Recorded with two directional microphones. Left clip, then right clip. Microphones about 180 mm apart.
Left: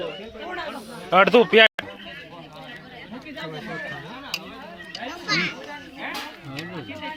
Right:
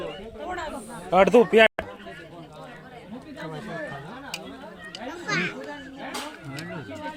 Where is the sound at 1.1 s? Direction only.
5° right (ahead or behind).